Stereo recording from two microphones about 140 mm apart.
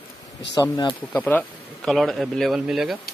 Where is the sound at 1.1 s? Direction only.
10° left (ahead or behind).